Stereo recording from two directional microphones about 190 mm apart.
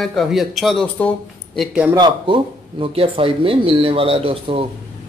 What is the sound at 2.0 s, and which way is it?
Speech, 25° right (ahead or behind).